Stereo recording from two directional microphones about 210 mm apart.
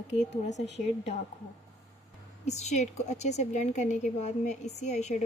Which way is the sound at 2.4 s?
35° left (ahead or behind).